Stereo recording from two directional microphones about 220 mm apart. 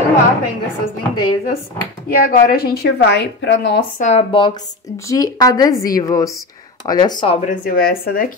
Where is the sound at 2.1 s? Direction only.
40° left (ahead or behind).